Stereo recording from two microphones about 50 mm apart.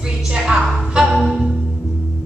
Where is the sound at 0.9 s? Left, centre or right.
Centre.